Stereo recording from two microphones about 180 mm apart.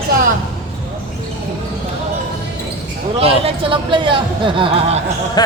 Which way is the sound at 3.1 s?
30° right (ahead or behind).